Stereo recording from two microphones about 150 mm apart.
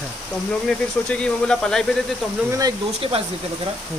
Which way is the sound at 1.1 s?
5° left (ahead or behind).